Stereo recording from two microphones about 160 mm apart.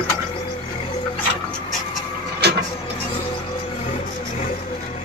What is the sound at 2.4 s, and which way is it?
Vehicle, 90° right.